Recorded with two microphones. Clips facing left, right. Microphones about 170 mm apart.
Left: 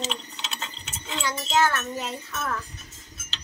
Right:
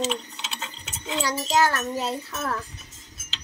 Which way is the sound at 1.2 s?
35° right (ahead or behind).